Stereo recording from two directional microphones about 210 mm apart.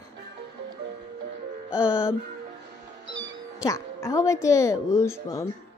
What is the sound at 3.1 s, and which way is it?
Music, 65° right (ahead or behind).